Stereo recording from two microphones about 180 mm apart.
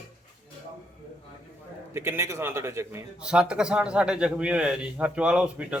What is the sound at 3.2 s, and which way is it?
A man's voice, 5° right (ahead or behind).